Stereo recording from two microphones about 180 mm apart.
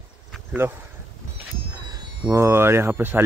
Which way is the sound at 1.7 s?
20° right (ahead or behind).